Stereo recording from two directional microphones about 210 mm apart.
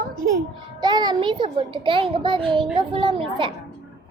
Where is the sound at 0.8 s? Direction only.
20° right (ahead or behind).